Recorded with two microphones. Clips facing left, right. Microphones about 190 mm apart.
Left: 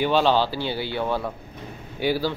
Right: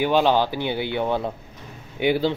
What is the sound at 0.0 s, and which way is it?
A man's voice, 15° right (ahead or behind).